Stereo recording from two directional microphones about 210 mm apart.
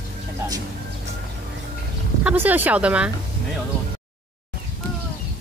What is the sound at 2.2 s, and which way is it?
Speech, 10° right (ahead or behind).